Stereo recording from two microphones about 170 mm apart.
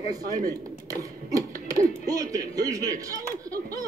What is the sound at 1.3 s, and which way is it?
Speech, 20° right (ahead or behind).